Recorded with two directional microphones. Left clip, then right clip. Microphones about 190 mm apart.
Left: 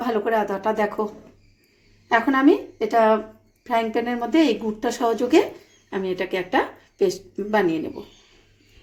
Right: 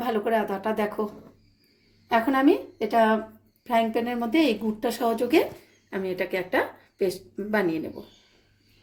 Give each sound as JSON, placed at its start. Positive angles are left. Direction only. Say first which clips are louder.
{"t": 0.0, "sound": "speech", "louder": "left 3 dB", "side_deg": 20}
{"t": 2.0, "sound": "speech", "louder": "left 4 dB", "side_deg": 10}